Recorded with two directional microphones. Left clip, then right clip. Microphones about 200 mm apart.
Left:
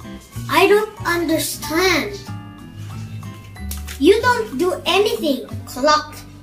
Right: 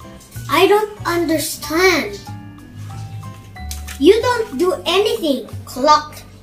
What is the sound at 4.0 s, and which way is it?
A child's voice, 10° right (ahead or behind).